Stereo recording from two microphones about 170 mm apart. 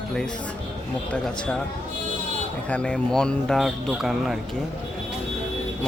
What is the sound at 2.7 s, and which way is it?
Speech, 5° left (ahead or behind).